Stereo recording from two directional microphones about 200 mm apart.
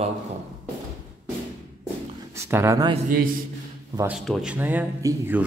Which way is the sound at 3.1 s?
45° right (ahead or behind).